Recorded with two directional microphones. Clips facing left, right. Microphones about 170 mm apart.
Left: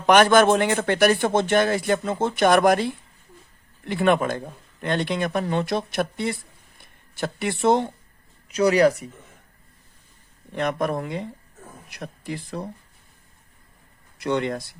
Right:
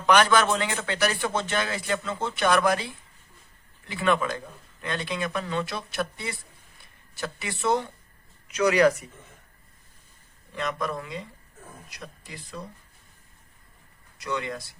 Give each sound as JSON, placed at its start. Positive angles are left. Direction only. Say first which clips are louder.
{"t": 0.0, "sound": "speech", "louder": "left 5 dB", "side_deg": 50}
{"t": 7.2, "sound": "speech", "louder": "left 7 dB", "side_deg": 55}
{"t": 8.4, "sound": "speech", "louder": "left 3 dB", "side_deg": 35}
{"t": 10.5, "sound": "speech", "louder": "left 6 dB", "side_deg": 55}
{"t": 14.2, "sound": "speech", "louder": "left 7 dB", "side_deg": 55}